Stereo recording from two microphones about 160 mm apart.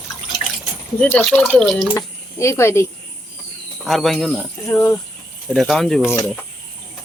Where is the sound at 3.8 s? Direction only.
Centre (ahead or behind).